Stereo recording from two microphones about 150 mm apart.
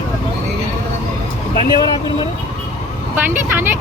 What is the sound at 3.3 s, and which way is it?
Speech, 15° right (ahead or behind).